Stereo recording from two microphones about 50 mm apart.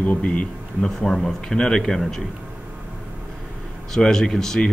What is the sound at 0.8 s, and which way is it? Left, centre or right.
Speech, centre.